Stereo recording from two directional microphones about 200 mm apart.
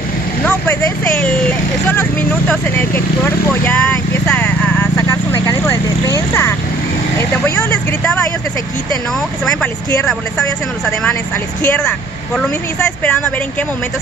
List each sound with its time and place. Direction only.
0.5 s speech: 5° left (ahead or behind)
7.2 s speech: 10° left (ahead or behind)
11.6 s speech: 5° left (ahead or behind)
13.0 s speech: 5° left (ahead or behind)